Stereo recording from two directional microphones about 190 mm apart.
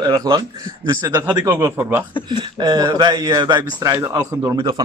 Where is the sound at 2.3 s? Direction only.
25° right (ahead or behind).